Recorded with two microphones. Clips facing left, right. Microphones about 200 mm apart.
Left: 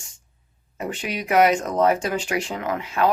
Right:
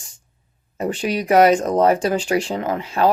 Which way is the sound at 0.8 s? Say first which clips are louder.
Right 6 dB; 30° right (ahead or behind).